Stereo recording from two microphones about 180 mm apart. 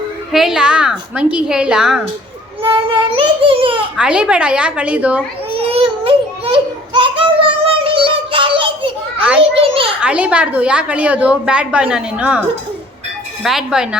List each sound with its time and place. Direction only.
0.3 s a woman's voice: centre (ahead or behind)
2.6 s a child's voice: 30° right (ahead or behind)
3.9 s a woman's voice: 5° right (ahead or behind)
5.5 s a sound: 30° right (ahead or behind)
10.0 s a woman's voice: 5° right (ahead or behind)
13.4 s a woman's voice: centre (ahead or behind)